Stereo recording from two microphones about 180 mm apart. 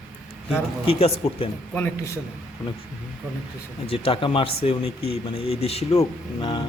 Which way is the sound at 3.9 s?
30° left (ahead or behind).